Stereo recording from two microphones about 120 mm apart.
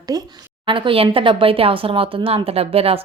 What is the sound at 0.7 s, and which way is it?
Speech, 45° right (ahead or behind).